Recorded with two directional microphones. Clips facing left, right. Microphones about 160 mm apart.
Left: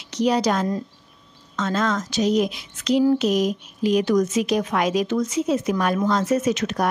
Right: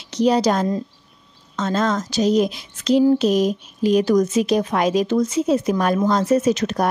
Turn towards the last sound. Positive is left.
turn(degrees=-35)  # may be behind; listen again after turning